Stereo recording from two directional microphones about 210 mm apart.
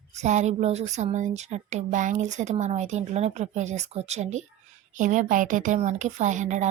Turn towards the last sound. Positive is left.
turn(degrees=-35)  # may be behind; listen again after turning